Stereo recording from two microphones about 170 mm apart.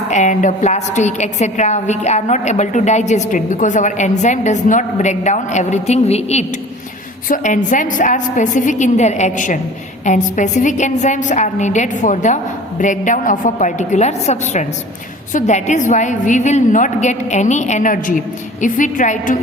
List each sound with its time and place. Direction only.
0.1 s a woman's voice: 45° left (ahead or behind)